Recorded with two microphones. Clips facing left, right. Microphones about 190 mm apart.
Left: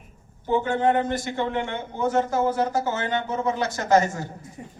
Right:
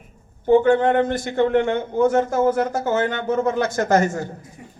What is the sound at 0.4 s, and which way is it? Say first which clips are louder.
Speech: right 7 dB; 55° right (ahead or behind).